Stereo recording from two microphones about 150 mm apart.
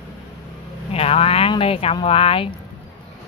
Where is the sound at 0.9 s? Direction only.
40° left (ahead or behind).